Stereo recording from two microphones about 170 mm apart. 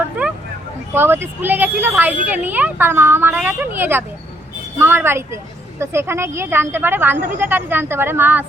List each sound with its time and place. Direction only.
0.2 s vehicle: 10° right (ahead or behind)
0.9 s speech: 15° right (ahead or behind)